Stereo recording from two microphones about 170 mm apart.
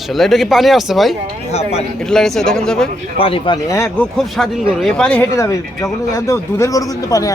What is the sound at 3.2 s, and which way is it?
Speech, 30° left (ahead or behind).